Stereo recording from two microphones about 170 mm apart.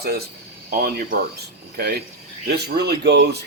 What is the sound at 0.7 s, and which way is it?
Speech, 65° right (ahead or behind).